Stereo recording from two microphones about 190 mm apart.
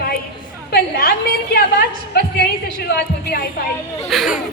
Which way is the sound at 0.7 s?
55° left (ahead or behind).